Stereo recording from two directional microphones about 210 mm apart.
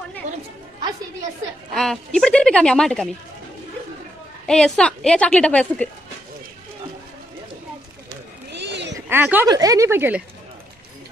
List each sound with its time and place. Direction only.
1.7 s a woman's voice: centre (ahead or behind)
4.5 s a woman's voice: 5° left (ahead or behind)
8.5 s a sound: 55° right (ahead or behind)
8.9 s speech: 10° right (ahead or behind)